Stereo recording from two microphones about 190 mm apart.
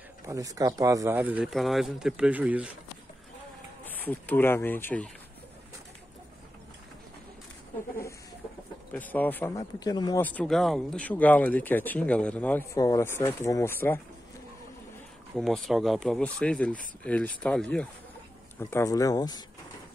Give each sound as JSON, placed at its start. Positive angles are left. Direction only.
{"t": 0.3, "sound": "speech", "side_deg": -20}
{"t": 3.8, "sound": "speech", "side_deg": 10}
{"t": 8.9, "sound": "speech", "side_deg": 10}
{"t": 10.2, "sound": "speech", "side_deg": 5}
{"t": 12.7, "sound": "speech", "side_deg": 20}
{"t": 15.3, "sound": "speech", "side_deg": 0}